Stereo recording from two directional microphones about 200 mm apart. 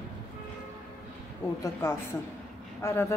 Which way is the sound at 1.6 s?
15° left (ahead or behind).